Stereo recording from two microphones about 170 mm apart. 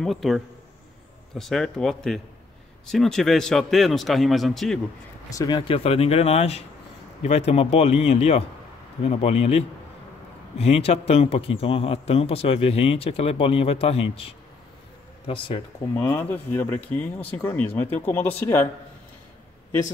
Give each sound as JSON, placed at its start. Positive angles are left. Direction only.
{"t": 0.0, "sound": "speech", "side_deg": 0}
{"t": 5.4, "sound": "speech", "side_deg": 30}
{"t": 15.9, "sound": "speech", "side_deg": 15}